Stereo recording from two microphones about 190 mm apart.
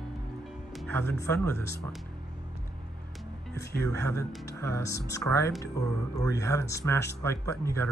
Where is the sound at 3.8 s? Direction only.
15° left (ahead or behind).